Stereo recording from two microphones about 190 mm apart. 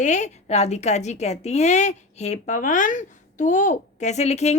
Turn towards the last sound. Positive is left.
turn(degrees=35)  # may be behind; listen again after turning